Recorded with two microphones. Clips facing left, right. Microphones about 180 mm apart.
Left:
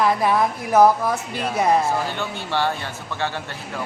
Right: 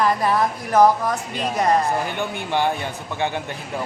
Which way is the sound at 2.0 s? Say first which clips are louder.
Right 1 dB; 15° right (ahead or behind).